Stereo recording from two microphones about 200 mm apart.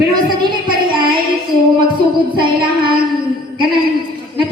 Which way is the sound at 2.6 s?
25° right (ahead or behind).